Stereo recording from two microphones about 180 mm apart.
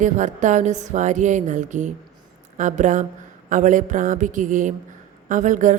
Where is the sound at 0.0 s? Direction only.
45° right (ahead or behind).